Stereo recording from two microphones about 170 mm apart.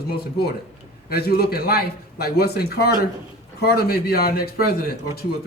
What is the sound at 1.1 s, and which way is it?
A man's voice, 65° left (ahead or behind).